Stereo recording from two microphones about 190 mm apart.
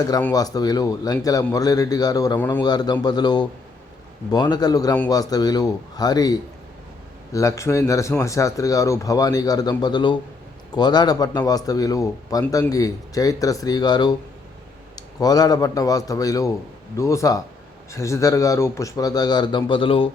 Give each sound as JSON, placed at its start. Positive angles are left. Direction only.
{"t": 0.3, "sound": "a man's voice", "side_deg": 20}